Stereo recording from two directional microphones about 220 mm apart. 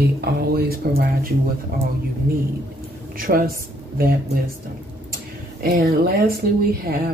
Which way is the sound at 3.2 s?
40° right (ahead or behind).